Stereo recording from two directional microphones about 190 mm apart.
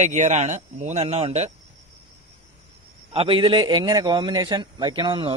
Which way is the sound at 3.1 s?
30° right (ahead or behind).